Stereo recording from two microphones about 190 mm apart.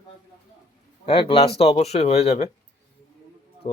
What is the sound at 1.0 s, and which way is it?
Speech, 30° left (ahead or behind).